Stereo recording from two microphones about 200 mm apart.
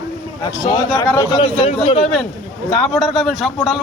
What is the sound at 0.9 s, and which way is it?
Speech, 20° left (ahead or behind).